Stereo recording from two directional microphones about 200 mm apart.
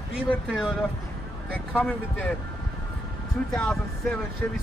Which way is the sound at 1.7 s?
5° left (ahead or behind).